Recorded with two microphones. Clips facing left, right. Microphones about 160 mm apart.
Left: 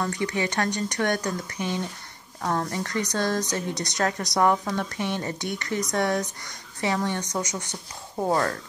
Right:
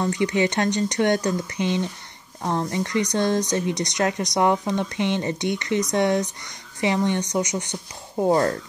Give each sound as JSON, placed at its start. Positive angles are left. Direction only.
{"t": 0.0, "sound": "speech", "side_deg": -20}